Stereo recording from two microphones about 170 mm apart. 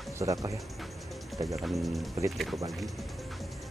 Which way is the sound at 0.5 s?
Centre (ahead or behind).